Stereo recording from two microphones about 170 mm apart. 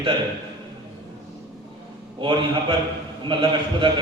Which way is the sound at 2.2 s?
30° right (ahead or behind).